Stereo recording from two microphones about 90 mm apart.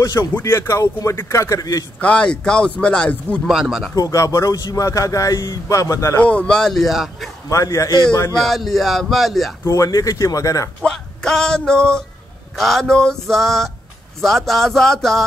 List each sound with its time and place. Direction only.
0.0 s speech: 40° left (ahead or behind)
2.0 s speech: 10° left (ahead or behind)
3.4 s male singing: 5° right (ahead or behind)
3.9 s speech: 40° left (ahead or behind)
6.2 s male singing: 15° left (ahead or behind)
7.4 s speech: 35° left (ahead or behind)
8.5 s male singing: centre (ahead or behind)
9.7 s speech: 40° left (ahead or behind)
10.8 s a sound: 5° left (ahead or behind)
12.5 s male singing: 5° left (ahead or behind)